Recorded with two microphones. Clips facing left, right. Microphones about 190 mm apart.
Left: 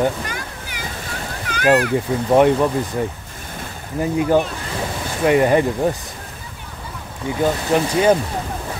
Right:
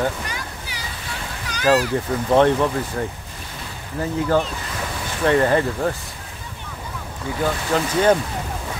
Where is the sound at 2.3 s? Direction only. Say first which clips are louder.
Left 2 dB; 10° left (ahead or behind).